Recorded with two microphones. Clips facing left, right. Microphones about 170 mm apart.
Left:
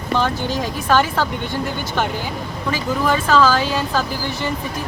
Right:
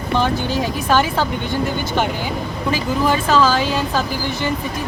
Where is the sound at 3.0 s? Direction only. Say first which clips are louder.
Even; 10° right (ahead or behind).